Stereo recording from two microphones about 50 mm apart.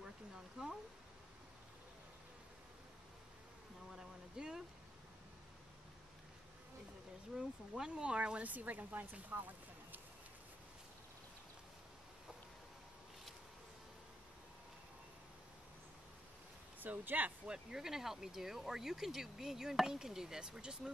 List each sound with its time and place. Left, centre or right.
3.9 s a sound: centre
7.3 s speech: centre
8.5 s speech: right
16.8 s speech: right
17.5 s speech: centre